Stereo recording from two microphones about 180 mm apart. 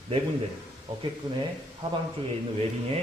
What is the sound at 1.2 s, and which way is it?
Speech, 20° right (ahead or behind).